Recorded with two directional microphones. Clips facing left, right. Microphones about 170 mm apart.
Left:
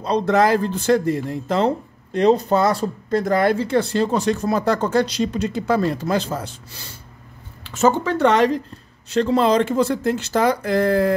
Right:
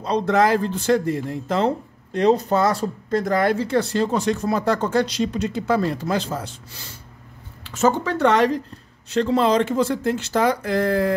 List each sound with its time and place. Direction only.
0.0 s speech: 35° left (ahead or behind)
7.8 s speech: 20° left (ahead or behind)
9.1 s speech: 40° left (ahead or behind)